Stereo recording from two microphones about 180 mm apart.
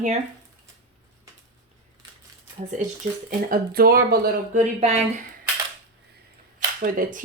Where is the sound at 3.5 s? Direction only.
55° right (ahead or behind).